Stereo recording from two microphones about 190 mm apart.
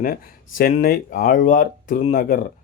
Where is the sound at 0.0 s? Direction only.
50° left (ahead or behind).